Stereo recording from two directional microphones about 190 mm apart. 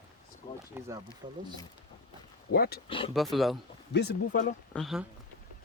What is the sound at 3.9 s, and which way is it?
Speech, 60° left (ahead or behind).